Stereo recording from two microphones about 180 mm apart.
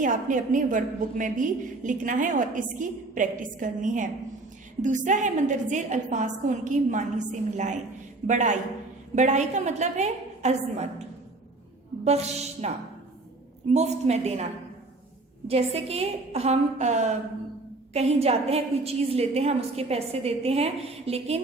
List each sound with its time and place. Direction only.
0.0 s a woman's voice: 45° right (ahead or behind)
12.0 s a woman's voice: 35° right (ahead or behind)
13.7 s a woman's voice: 35° right (ahead or behind)
15.4 s a woman's voice: 35° right (ahead or behind)